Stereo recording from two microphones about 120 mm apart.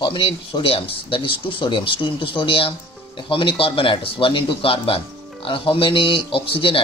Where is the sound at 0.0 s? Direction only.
45° left (ahead or behind).